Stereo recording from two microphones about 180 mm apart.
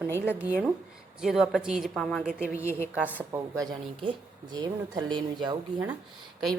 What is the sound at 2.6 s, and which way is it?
Speech, 15° left (ahead or behind).